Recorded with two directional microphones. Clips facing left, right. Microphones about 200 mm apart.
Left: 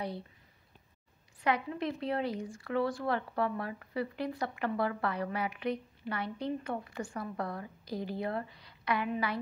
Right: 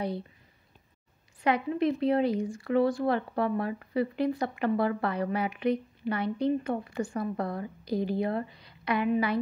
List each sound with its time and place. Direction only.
1.4 s speech: 20° right (ahead or behind)